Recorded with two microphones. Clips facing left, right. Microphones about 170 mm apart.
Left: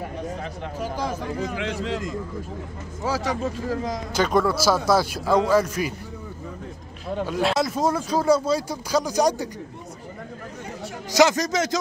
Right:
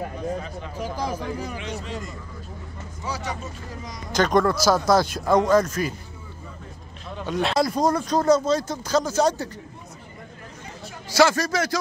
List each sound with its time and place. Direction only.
1.0 s speech: 10° right (ahead or behind)
1.6 s speech: 90° left
4.1 s speech: 5° left (ahead or behind)
7.2 s speech: 5° left (ahead or behind)
11.1 s a man's voice: 20° left (ahead or behind)